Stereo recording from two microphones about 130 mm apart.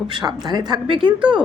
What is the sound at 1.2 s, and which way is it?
Speech, 10° right (ahead or behind).